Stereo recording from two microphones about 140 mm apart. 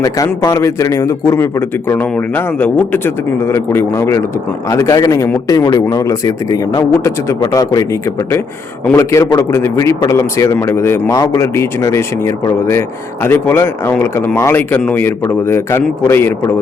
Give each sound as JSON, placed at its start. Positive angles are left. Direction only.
{"t": 0.0, "sound": "a man's voice", "side_deg": 25}
{"t": 8.9, "sound": "a man's voice", "side_deg": 20}